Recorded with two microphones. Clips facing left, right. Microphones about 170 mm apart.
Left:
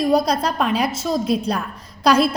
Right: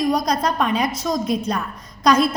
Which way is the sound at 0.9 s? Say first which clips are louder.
Left 1 dB; 30° left (ahead or behind).